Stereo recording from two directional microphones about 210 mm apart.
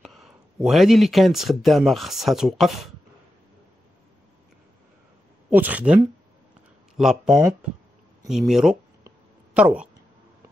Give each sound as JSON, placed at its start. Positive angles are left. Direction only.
{"t": 0.0, "sound": "speech", "side_deg": 0}
{"t": 5.5, "sound": "speech", "side_deg": -5}
{"t": 7.0, "sound": "speech", "side_deg": 0}
{"t": 9.0, "sound": "a sound", "side_deg": -5}